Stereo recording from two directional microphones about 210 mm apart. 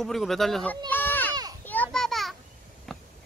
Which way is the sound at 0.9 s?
10° left (ahead or behind).